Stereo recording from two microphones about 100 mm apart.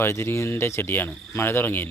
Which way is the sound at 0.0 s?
25° left (ahead or behind).